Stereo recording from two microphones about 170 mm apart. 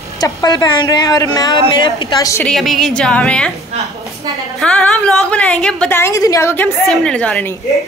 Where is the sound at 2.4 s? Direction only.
Centre (ahead or behind).